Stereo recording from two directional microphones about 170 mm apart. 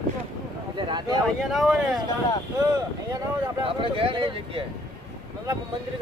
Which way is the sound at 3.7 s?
35° right (ahead or behind).